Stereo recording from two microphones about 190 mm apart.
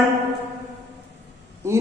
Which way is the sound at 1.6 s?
15° right (ahead or behind).